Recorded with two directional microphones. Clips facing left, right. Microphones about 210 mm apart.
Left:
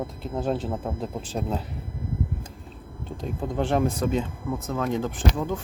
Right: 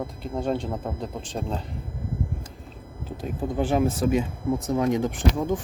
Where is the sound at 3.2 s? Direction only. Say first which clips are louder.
Right 1 dB; 5° right (ahead or behind).